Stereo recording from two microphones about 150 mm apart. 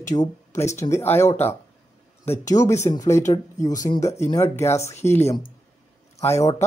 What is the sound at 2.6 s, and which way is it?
Speech, 20° left (ahead or behind).